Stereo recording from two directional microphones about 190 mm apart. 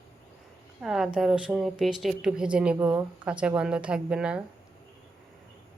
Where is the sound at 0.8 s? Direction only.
5° right (ahead or behind).